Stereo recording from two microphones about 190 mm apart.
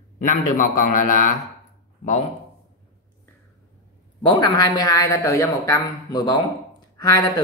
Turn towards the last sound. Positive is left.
turn(degrees=20)  # may be behind; listen again after turning